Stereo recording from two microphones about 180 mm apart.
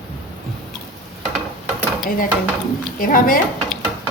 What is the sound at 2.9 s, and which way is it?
Speech, 50° left (ahead or behind).